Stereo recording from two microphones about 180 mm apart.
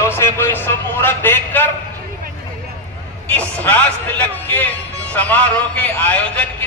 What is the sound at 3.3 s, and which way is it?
A man's voice, 10° left (ahead or behind).